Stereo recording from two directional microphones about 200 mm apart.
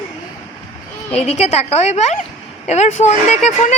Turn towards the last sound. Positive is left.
turn(degrees=35)  # may be behind; listen again after turning